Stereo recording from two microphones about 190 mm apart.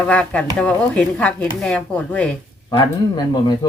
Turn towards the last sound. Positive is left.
turn(degrees=20)  # may be behind; listen again after turning